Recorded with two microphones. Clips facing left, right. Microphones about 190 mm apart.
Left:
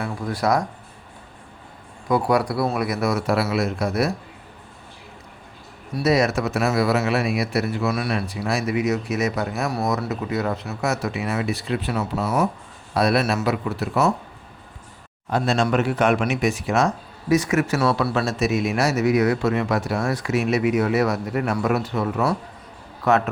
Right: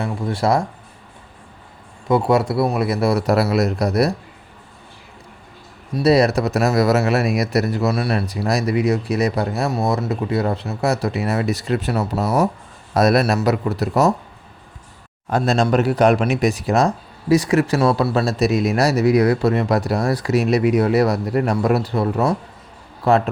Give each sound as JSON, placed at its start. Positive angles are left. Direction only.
{"t": 0.0, "sound": "speech", "side_deg": -25}
{"t": 2.0, "sound": "speech", "side_deg": -25}
{"t": 6.0, "sound": "speech", "side_deg": -35}
{"t": 15.3, "sound": "speech", "side_deg": -40}